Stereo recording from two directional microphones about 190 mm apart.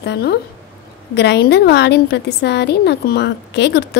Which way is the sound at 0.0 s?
60° left (ahead or behind).